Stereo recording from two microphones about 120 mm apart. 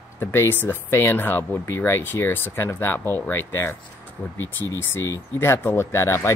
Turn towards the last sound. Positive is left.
turn(degrees=25)  # may be behind; listen again after turning